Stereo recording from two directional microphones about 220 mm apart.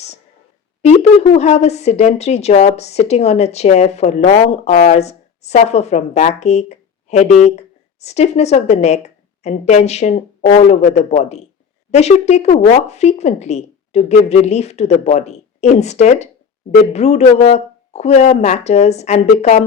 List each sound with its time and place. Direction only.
0.8 s speech: 30° left (ahead or behind)